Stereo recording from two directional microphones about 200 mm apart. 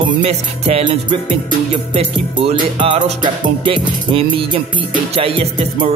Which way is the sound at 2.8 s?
25° right (ahead or behind).